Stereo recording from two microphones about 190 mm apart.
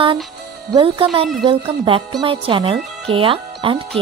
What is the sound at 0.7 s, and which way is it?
Speech, 30° right (ahead or behind).